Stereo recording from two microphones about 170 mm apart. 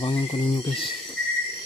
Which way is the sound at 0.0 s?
30° left (ahead or behind).